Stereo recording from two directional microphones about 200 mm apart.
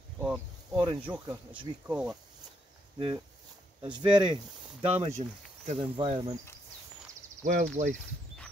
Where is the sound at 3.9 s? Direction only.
25° right (ahead or behind).